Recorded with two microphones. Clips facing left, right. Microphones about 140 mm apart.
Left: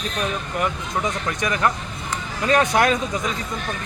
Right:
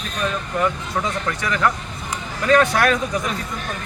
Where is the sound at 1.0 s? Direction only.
20° left (ahead or behind).